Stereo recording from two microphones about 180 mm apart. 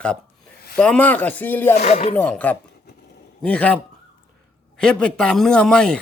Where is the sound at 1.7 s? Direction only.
35° left (ahead or behind).